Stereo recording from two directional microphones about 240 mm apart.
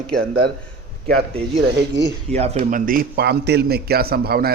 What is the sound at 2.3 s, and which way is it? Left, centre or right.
A man's voice, right.